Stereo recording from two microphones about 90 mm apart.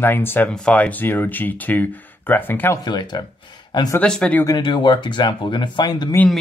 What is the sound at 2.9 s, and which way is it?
Speech, 55° left (ahead or behind).